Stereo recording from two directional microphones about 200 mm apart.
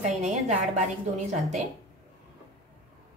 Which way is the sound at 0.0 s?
35° right (ahead or behind).